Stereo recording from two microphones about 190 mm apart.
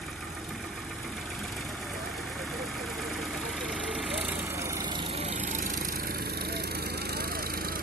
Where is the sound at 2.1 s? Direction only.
Centre (ahead or behind).